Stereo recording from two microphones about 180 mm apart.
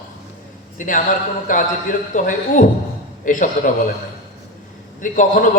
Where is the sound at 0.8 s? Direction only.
45° left (ahead or behind).